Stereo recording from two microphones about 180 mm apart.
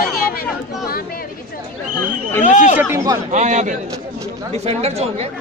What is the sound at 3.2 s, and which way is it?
A man's voice, 40° right (ahead or behind).